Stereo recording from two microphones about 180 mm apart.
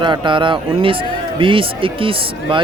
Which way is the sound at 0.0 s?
25° right (ahead or behind).